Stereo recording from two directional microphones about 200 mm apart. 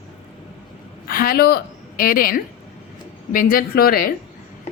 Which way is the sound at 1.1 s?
45° left (ahead or behind).